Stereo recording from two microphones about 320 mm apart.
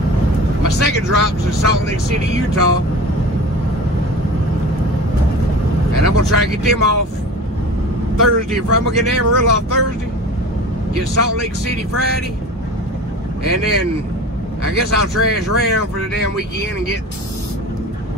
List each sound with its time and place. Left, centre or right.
0.7 s speech: right
6.0 s speech: right
8.7 s speech: right
11.0 s speech: right
13.4 s speech: right